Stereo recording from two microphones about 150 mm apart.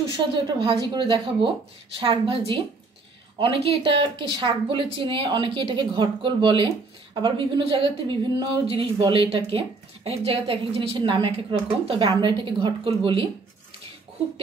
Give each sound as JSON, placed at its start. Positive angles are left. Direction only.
{"t": 0.1, "sound": "speech", "side_deg": -35}